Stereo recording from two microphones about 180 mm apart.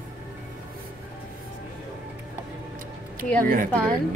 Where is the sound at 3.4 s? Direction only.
50° right (ahead or behind).